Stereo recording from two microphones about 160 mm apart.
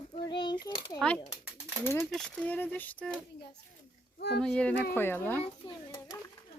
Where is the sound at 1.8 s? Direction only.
15° left (ahead or behind).